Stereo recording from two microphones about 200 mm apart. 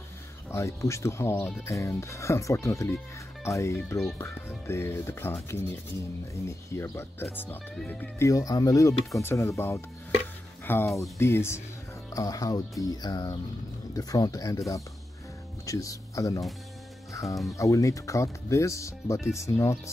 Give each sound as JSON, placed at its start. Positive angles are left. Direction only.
{"t": 0.5, "sound": "speech", "side_deg": 15}
{"t": 10.6, "sound": "a sound", "side_deg": 10}
{"t": 11.1, "sound": "speech", "side_deg": 15}
{"t": 15.6, "sound": "speech", "side_deg": 15}